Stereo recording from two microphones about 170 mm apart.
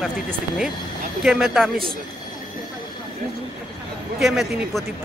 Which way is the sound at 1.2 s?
Centre (ahead or behind).